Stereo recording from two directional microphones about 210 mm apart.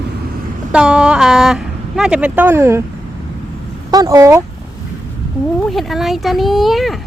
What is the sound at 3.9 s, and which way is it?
Speech, 15° right (ahead or behind).